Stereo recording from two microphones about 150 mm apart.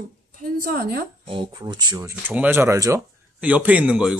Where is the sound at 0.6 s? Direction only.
70° right (ahead or behind).